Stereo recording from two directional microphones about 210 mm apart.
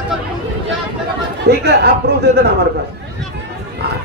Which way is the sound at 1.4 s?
55° right (ahead or behind).